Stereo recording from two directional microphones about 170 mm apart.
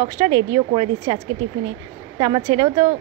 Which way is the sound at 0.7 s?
40° right (ahead or behind).